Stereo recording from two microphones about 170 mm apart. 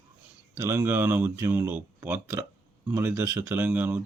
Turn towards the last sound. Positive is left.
turn(degrees=-10)  # may be behind; listen again after turning